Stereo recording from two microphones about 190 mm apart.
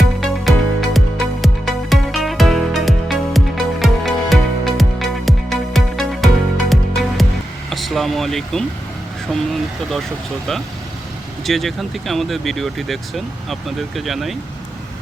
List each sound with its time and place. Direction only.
0.0 s music: centre (ahead or behind)
7.7 s vehicle: centre (ahead or behind)
9.3 s speech: centre (ahead or behind)
11.4 s speech: centre (ahead or behind)